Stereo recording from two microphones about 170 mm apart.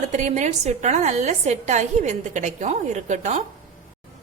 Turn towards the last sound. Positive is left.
turn(degrees=-45)  # may be behind; listen again after turning